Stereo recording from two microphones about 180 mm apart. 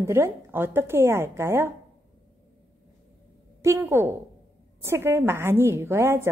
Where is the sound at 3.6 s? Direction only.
15° right (ahead or behind).